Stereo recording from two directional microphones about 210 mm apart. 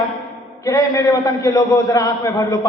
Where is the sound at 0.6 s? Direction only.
15° left (ahead or behind).